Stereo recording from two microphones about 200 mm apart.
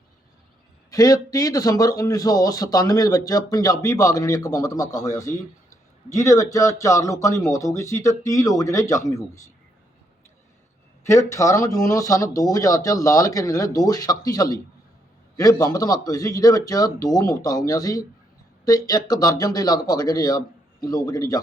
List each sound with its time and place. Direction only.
0.9 s a man's voice: 15° left (ahead or behind)
11.0 s a man's voice: 15° left (ahead or behind)